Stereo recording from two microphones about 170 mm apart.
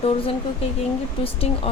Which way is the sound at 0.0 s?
35° left (ahead or behind).